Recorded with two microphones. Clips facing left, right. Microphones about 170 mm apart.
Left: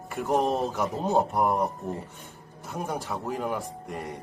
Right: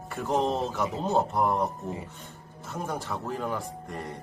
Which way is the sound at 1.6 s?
5° right (ahead or behind).